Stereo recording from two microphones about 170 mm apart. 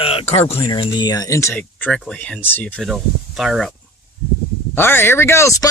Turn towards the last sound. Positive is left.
turn(degrees=15)  # may be behind; listen again after turning